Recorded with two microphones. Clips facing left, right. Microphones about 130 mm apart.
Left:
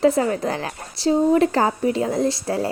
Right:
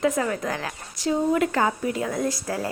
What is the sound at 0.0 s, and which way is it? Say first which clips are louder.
A woman's voice: left 5 dB; 30° left (ahead or behind).